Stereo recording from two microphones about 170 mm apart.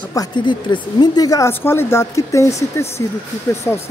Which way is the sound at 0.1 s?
25° left (ahead or behind).